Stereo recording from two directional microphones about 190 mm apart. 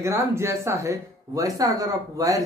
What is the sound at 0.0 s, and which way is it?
Speech, 15° right (ahead or behind).